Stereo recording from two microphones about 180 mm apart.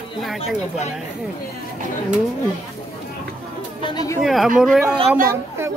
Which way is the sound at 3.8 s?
20° left (ahead or behind).